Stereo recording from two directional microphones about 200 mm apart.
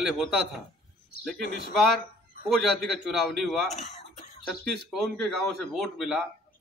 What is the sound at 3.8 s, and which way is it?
Throat clearing, 35° left (ahead or behind).